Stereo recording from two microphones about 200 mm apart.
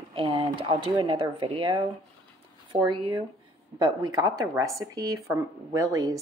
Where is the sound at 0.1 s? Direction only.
25° right (ahead or behind).